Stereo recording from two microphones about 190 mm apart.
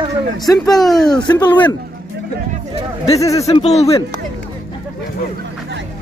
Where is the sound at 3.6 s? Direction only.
35° left (ahead or behind).